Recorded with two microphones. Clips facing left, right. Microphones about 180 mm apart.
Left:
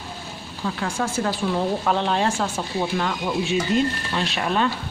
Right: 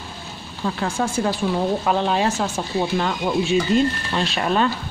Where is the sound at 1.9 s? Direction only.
10° right (ahead or behind).